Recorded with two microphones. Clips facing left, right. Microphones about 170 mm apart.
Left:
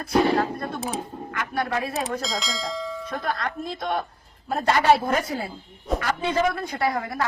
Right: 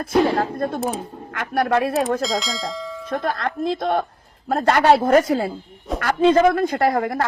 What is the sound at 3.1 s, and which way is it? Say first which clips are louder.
Speech: right 7 dB; 50° right (ahead or behind).